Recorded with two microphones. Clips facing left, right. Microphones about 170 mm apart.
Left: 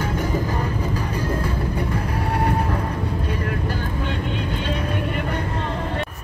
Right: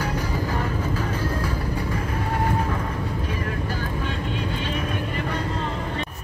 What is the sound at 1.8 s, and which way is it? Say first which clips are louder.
Vehicle: left 2 dB; 70° left (ahead or behind).